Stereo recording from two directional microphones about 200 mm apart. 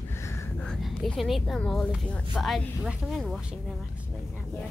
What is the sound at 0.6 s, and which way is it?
Speech, centre (ahead or behind).